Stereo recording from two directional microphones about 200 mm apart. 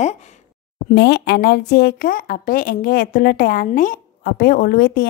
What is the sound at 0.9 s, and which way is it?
A woman's voice, 55° left (ahead or behind).